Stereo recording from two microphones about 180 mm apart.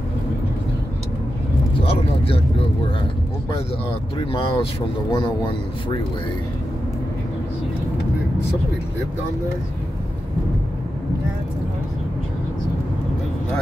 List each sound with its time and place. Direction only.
1.9 s vehicle: 30° left (ahead or behind)
4.2 s speech: 30° left (ahead or behind)